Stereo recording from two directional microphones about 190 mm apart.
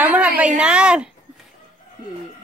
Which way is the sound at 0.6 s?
5° right (ahead or behind).